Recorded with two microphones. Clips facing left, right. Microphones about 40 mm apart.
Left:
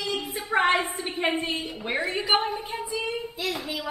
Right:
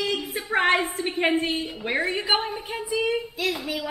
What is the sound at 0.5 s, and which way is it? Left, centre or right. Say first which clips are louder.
Speech: right 1 dB; centre.